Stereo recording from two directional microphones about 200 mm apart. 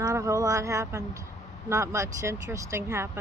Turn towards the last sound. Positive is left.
turn(degrees=-15)  # may be behind; listen again after turning